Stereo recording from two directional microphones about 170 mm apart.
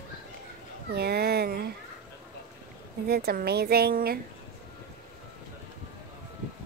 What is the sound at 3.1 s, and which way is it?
A woman's voice, 65° right (ahead or behind).